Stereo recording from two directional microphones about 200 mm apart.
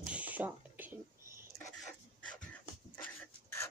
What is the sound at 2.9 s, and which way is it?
Dog, 10° left (ahead or behind).